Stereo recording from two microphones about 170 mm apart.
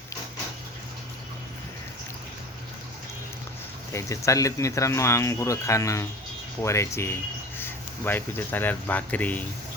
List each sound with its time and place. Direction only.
3.9 s speech: 20° left (ahead or behind)